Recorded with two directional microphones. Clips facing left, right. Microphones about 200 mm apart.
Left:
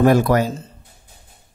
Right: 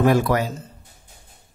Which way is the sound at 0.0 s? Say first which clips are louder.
Left 4 dB; 45° left (ahead or behind).